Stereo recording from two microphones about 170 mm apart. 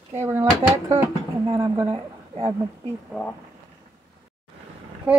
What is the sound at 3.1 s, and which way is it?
Speech, 5° right (ahead or behind).